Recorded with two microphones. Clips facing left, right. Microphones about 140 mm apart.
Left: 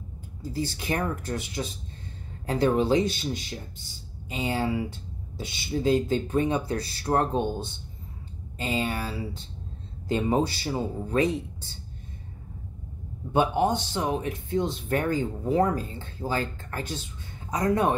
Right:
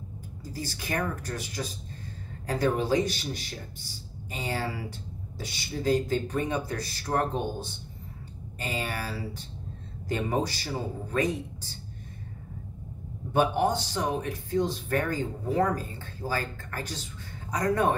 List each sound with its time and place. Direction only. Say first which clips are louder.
0.4 s speech: left 6 dB; 25° left (ahead or behind)
13.3 s speech: left 1 dB; 20° left (ahead or behind)